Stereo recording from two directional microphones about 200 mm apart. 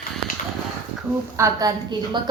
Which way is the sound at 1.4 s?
15° right (ahead or behind).